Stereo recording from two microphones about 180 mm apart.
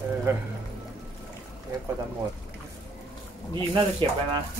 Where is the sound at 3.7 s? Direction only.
30° right (ahead or behind).